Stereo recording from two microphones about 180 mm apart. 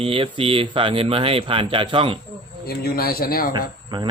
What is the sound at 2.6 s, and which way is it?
Speech, 60° left (ahead or behind).